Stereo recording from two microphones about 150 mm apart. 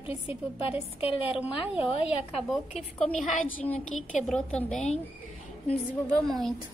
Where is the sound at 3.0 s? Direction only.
5° left (ahead or behind).